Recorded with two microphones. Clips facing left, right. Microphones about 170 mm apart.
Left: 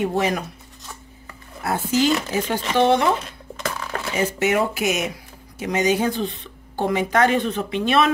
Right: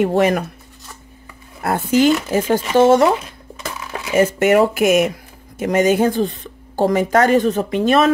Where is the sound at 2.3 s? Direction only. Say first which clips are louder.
Right 6 dB; 45° right (ahead or behind).